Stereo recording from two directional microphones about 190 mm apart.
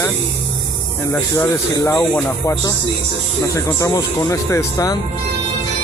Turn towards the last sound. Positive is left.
turn(degrees=20)  # may be behind; listen again after turning